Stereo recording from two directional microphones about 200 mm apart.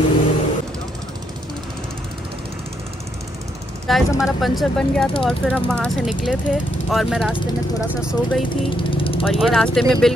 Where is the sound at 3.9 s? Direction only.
Centre (ahead or behind).